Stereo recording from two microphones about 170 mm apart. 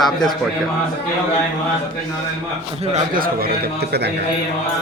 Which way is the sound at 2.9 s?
55° right (ahead or behind).